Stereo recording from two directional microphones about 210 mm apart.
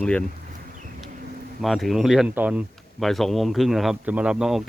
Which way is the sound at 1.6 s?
Centre (ahead or behind).